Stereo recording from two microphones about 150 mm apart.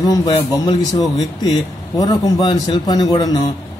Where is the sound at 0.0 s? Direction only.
25° left (ahead or behind).